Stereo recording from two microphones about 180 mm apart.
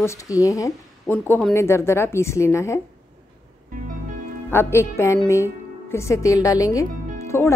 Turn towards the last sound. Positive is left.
turn(degrees=15)  # may be behind; listen again after turning